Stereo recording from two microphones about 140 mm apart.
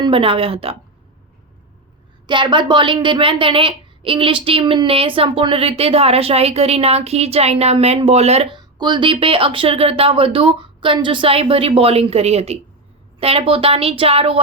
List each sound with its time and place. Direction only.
0.0 s a woman's voice: 40° right (ahead or behind)
2.2 s a woman's voice: 35° right (ahead or behind)
8.5 s a woman's voice: 35° right (ahead or behind)